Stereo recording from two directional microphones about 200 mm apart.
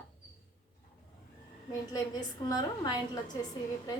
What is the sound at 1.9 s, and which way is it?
A woman's voice, 20° left (ahead or behind).